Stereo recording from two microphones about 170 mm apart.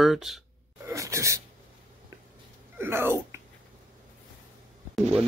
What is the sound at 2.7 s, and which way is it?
Speech, 15° right (ahead or behind).